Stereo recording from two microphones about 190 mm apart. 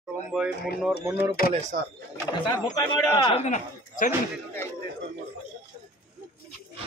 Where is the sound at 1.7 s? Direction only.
50° right (ahead or behind).